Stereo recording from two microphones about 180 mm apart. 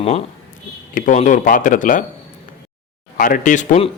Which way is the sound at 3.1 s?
50° left (ahead or behind).